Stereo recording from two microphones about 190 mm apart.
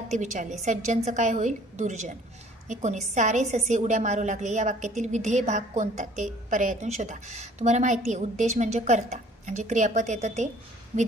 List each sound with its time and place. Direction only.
0.1 s a woman's voice: 40° right (ahead or behind)